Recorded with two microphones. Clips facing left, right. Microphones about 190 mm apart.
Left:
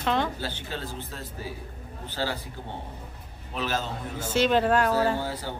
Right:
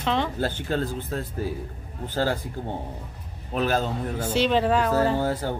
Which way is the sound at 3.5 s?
50° right (ahead or behind).